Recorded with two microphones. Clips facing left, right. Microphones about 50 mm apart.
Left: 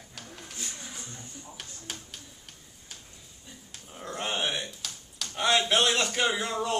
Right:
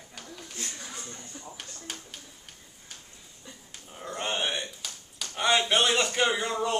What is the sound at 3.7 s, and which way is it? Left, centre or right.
Speech, centre.